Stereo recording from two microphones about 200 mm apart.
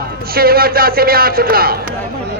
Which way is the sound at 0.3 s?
50° right (ahead or behind).